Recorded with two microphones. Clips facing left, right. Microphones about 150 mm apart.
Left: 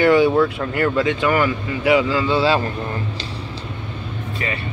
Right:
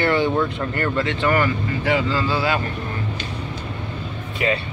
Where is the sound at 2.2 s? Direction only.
30° left (ahead or behind).